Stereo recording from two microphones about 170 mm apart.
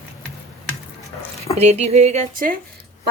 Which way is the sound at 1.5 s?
40° right (ahead or behind).